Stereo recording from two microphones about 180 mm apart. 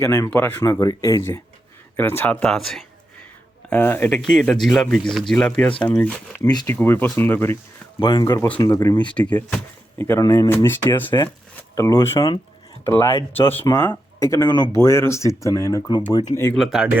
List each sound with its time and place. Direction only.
0.0 s speech: 15° left (ahead or behind)
6.5 s speech: 25° left (ahead or behind)
6.7 s speech: 10° left (ahead or behind)
7.9 s speech: 25° left (ahead or behind)
9.1 s speech: 5° left (ahead or behind); by 16.2 s 25° left (ahead or behind)
16.3 s speech: 15° left (ahead or behind)
16.6 s speech: centre (ahead or behind)